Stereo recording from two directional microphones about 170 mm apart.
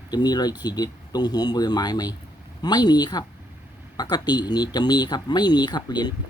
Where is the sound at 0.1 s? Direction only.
25° left (ahead or behind).